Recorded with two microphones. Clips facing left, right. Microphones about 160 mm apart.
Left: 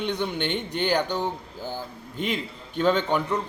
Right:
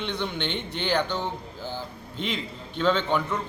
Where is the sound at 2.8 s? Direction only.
10° left (ahead or behind).